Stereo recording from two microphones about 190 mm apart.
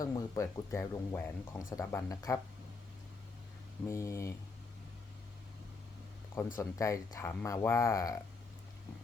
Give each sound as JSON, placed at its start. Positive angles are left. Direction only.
{"t": 0.0, "sound": "speech", "side_deg": 20}
{"t": 3.8, "sound": "speech", "side_deg": 15}
{"t": 6.6, "sound": "speech", "side_deg": 15}